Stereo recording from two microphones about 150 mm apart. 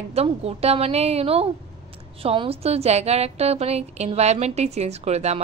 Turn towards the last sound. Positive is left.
turn(degrees=-45)  # may be behind; listen again after turning